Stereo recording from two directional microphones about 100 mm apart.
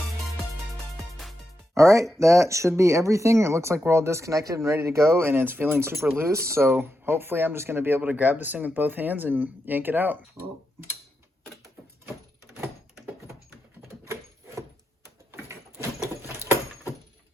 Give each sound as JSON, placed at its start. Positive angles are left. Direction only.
{"t": 1.1, "sound": "music", "side_deg": 0}
{"t": 1.7, "sound": "speech", "side_deg": -30}
{"t": 15.3, "sound": "sliding door", "side_deg": -25}